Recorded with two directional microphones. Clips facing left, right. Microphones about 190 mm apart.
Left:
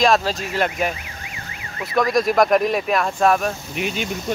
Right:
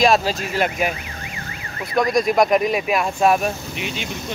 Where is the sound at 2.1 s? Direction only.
Centre (ahead or behind).